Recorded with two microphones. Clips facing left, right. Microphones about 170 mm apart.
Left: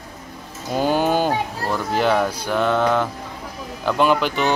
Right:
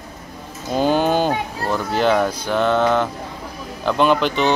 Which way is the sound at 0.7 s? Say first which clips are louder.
Right 2 dB; 10° left (ahead or behind).